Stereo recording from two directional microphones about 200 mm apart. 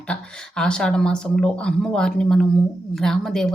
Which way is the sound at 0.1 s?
5° left (ahead or behind).